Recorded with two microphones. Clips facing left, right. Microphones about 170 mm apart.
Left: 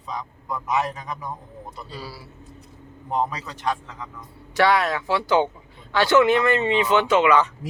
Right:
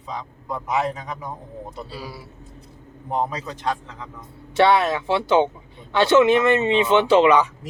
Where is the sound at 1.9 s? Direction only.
15° right (ahead or behind).